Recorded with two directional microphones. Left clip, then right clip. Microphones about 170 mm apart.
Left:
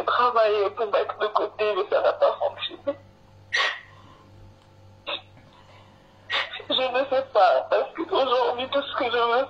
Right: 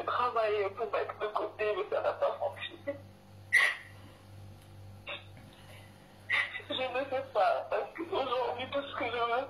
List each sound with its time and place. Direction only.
0.0 s speech: 25° left (ahead or behind)
5.1 s hiccup: 30° left (ahead or behind)
6.2 s speech: 30° left (ahead or behind)